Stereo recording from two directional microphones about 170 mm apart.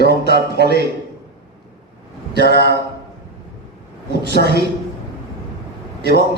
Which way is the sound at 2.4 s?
75° left (ahead or behind).